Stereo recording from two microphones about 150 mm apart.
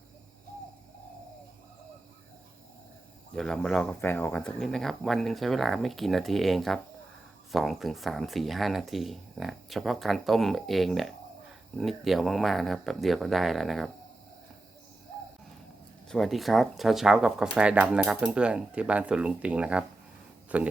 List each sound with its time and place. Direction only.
3.3 s speech: 5° left (ahead or behind)
16.0 s speech: centre (ahead or behind)